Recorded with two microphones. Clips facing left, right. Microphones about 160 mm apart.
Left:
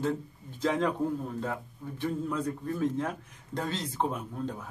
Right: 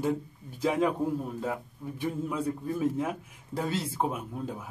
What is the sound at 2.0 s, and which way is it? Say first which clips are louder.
A man's voice: even; 10° right (ahead or behind).